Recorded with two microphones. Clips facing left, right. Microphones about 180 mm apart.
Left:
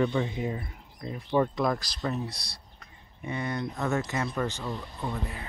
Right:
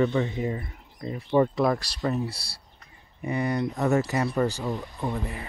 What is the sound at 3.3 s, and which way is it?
Speech, 10° right (ahead or behind).